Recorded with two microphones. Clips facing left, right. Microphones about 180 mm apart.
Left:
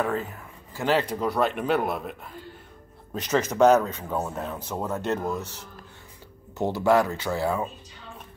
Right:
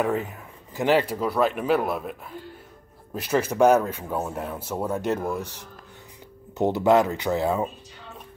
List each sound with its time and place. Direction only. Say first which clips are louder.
0.0 s speech: right 2 dB; 20° right (ahead or behind); by 2.1 s 5° right (ahead or behind)
3.2 s speech: even; 10° right (ahead or behind)